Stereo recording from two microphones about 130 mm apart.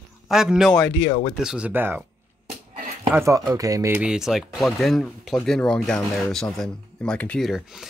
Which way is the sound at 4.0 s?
5° right (ahead or behind).